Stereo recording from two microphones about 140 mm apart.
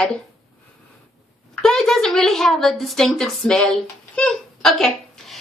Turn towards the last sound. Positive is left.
turn(degrees=0)  # may be behind; listen again after turning